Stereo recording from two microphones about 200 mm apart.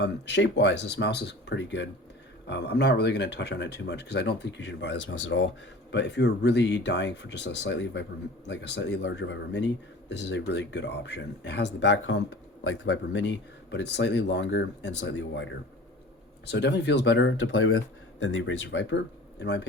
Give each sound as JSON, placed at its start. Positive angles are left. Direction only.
{"t": 0.0, "sound": "speech", "side_deg": 60}
{"t": 16.5, "sound": "speech", "side_deg": 60}